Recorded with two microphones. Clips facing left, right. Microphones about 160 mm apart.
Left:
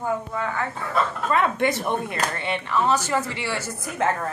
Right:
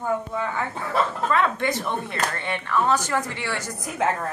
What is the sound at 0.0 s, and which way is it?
Speech, centre (ahead or behind).